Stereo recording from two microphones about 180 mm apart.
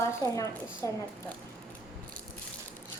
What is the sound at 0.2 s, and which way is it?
Speech, 20° left (ahead or behind).